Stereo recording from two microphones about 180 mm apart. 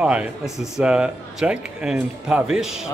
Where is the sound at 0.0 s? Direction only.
5° right (ahead or behind).